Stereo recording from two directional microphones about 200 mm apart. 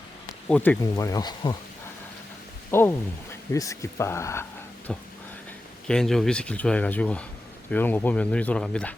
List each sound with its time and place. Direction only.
0.4 s speech: 5° left (ahead or behind)
2.6 s speech: 10° left (ahead or behind)
5.9 s speech: centre (ahead or behind)